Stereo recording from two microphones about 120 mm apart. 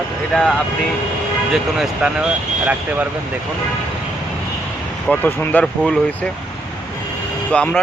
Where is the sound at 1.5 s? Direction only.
Centre (ahead or behind).